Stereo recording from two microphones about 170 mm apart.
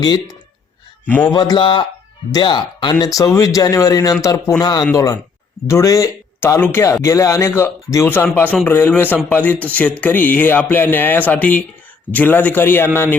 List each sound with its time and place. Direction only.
1.0 s speech: 10° left (ahead or behind)
1.3 s speech: 25° left (ahead or behind)